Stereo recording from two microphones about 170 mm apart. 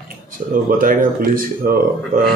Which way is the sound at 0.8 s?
55° right (ahead or behind).